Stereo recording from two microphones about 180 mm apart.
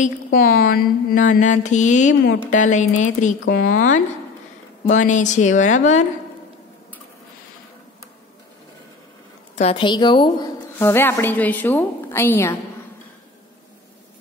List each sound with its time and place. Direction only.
0.0 s mantra: 50° left (ahead or behind)
9.6 s a woman's voice: 30° left (ahead or behind)
10.8 s a woman's voice: 15° left (ahead or behind)